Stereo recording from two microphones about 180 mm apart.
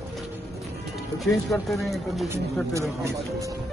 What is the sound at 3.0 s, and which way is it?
Speech, 15° right (ahead or behind).